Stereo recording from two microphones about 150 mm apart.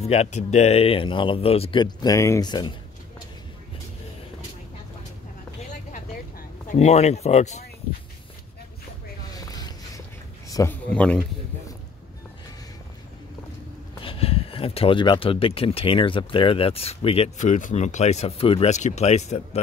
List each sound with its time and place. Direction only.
0.0 s speech: 45° left (ahead or behind); by 2.7 s 30° left (ahead or behind)
5.6 s vehicle: 55° left (ahead or behind)
6.7 s speech: 45° left (ahead or behind)
9.3 s vehicle: 25° left (ahead or behind)
10.5 s a man's voice: 20° left (ahead or behind)
10.9 s a man's voice: 5° left (ahead or behind)
14.0 s speech: 40° left (ahead or behind)